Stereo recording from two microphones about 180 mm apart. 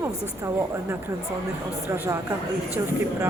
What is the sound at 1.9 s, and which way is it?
Speech, 15° right (ahead or behind).